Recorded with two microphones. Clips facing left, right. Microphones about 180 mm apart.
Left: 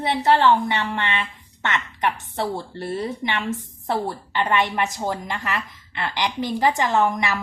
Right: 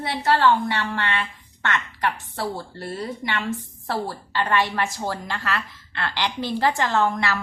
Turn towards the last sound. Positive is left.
turn(degrees=15)  # may be behind; listen again after turning